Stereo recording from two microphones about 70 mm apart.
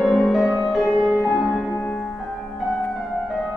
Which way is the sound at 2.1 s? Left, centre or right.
Centre.